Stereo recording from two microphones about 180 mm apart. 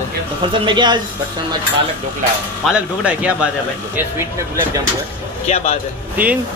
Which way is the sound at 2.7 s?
5° right (ahead or behind).